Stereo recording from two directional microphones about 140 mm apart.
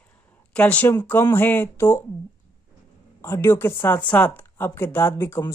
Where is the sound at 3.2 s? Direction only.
20° left (ahead or behind).